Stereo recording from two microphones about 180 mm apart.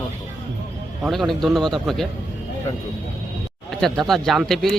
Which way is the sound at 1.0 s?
Centre (ahead or behind).